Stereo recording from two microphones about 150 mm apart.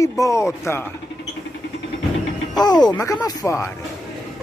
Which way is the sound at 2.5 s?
25° left (ahead or behind).